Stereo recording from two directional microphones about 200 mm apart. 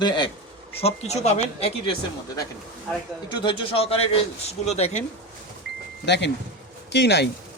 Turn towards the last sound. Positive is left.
turn(degrees=60)  # may be behind; listen again after turning